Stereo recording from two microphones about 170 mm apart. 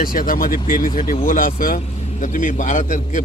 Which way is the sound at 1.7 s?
45° left (ahead or behind).